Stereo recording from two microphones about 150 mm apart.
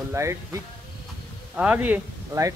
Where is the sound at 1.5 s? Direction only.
10° right (ahead or behind).